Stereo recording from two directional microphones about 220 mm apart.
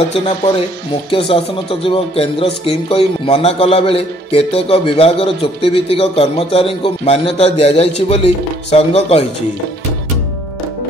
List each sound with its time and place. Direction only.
1.1 s speech: 25° left (ahead or behind)